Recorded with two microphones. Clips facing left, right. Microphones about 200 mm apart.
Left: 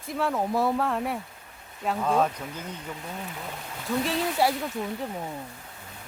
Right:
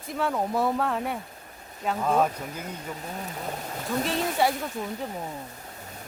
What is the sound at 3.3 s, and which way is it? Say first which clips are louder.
Speech: right 4 dB; 40° right (ahead or behind).